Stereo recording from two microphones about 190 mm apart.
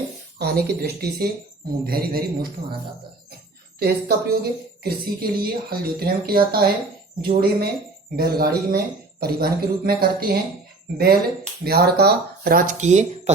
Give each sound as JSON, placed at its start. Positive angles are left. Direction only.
{"t": 0.3, "sound": "speech", "side_deg": -55}
{"t": 3.8, "sound": "speech", "side_deg": -55}